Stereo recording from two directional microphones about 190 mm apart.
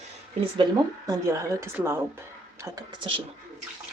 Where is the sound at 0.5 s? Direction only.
20° right (ahead or behind).